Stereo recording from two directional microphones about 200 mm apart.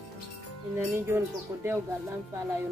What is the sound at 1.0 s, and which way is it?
Speech, 10° right (ahead or behind).